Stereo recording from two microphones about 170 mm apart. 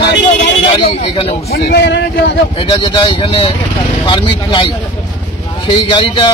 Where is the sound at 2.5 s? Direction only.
30° left (ahead or behind).